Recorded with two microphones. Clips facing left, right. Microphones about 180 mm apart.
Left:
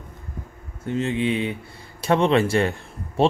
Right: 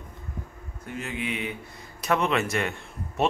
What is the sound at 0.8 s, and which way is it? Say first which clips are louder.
A man's voice: left 10 dB; 25° left (ahead or behind).